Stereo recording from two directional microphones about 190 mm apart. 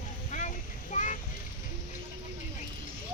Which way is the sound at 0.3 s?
40° left (ahead or behind).